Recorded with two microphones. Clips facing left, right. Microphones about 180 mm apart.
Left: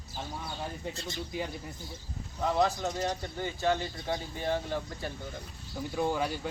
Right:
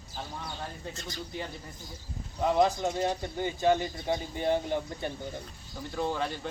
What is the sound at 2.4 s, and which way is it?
Speech, 15° right (ahead or behind).